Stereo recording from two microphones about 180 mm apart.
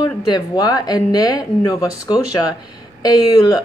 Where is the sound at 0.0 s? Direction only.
25° left (ahead or behind).